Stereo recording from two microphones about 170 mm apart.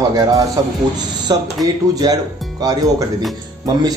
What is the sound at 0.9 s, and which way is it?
Speech, 25° right (ahead or behind).